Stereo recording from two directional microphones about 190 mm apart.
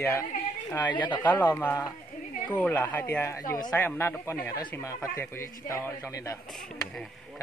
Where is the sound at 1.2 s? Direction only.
10° left (ahead or behind).